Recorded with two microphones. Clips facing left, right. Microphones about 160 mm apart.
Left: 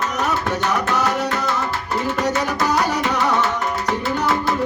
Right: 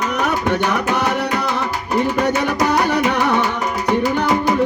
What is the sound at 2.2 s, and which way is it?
Music, 60° right (ahead or behind).